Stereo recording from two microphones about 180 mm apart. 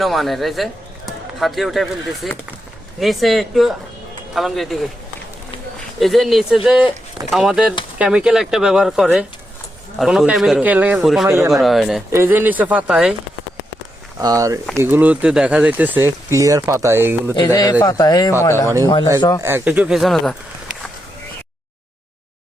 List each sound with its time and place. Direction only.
0.0 s speech: centre (ahead or behind)
6.0 s speech: centre (ahead or behind)
11.3 s speech: 15° right (ahead or behind)
11.6 s speech: centre (ahead or behind)
12.1 s speech: 10° right (ahead or behind)
14.2 s speech: 20° right (ahead or behind)
17.3 s a man's voice: 20° left (ahead or behind)
19.4 s speech: 15° right (ahead or behind)